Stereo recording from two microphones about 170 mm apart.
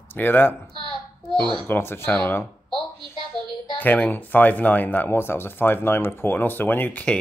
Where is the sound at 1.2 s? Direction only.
30° right (ahead or behind).